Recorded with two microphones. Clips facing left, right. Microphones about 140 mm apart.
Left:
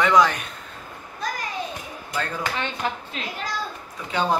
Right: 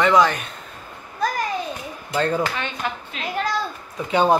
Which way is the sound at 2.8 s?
30° left (ahead or behind).